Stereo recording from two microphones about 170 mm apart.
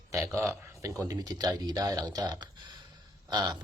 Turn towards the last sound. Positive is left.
turn(degrees=-25)  # may be behind; listen again after turning